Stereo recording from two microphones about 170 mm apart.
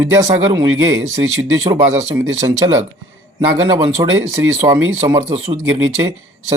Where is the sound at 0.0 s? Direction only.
15° right (ahead or behind).